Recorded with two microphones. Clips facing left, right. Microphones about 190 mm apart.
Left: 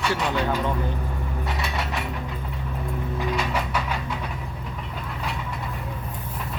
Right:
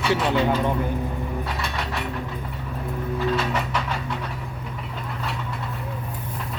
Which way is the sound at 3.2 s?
10° left (ahead or behind).